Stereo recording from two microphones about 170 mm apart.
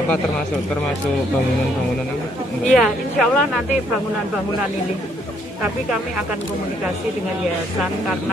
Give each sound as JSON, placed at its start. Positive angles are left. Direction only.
{"t": 2.7, "sound": "speech", "side_deg": 0}